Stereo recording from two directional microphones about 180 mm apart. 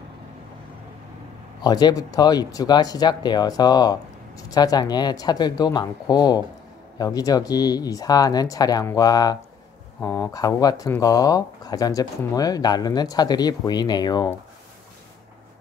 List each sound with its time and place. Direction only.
1.6 s speech: 25° left (ahead or behind)